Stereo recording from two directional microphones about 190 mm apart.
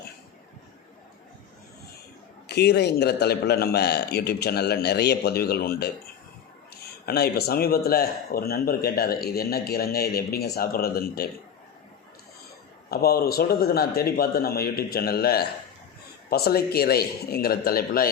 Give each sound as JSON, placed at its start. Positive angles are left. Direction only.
{"t": 2.5, "sound": "a man's voice", "side_deg": 60}
{"t": 7.0, "sound": "a man's voice", "side_deg": 55}
{"t": 12.9, "sound": "speech", "side_deg": 55}